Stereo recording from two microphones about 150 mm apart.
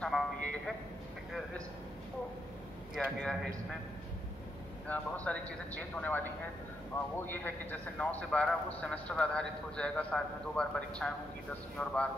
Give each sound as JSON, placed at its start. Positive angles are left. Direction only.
{"t": 0.0, "sound": "a man's voice", "side_deg": 5}
{"t": 3.2, "sound": "a man's voice", "side_deg": 5}
{"t": 4.8, "sound": "a man's voice", "side_deg": 10}